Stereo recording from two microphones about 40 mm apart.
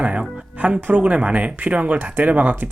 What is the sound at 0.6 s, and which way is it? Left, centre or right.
Speech, right.